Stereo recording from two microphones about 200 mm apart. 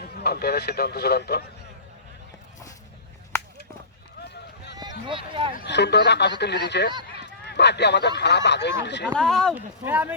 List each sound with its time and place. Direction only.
0.2 s a man's voice: 50° left (ahead or behind)
4.2 s run: 55° left (ahead or behind)
4.8 s speech: 20° right (ahead or behind)
5.5 s speech: 60° left (ahead or behind)
9.1 s speech: centre (ahead or behind)